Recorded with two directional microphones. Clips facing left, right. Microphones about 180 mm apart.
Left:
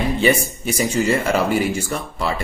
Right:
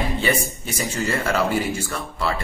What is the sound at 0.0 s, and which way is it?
A man's voice, 15° left (ahead or behind).